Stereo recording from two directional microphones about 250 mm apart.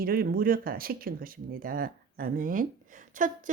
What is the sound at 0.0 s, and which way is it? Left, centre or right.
Speech, right.